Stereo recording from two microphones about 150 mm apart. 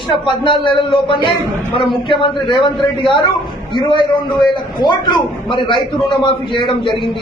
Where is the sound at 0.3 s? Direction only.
35° left (ahead or behind).